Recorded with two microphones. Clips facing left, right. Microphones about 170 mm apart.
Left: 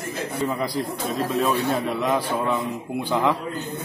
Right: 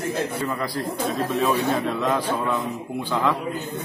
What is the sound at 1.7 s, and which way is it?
A man's voice, 10° left (ahead or behind).